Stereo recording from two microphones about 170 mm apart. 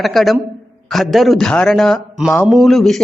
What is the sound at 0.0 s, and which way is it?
A man's voice, centre (ahead or behind).